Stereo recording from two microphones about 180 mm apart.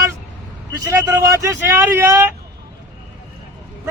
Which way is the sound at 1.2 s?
15° right (ahead or behind).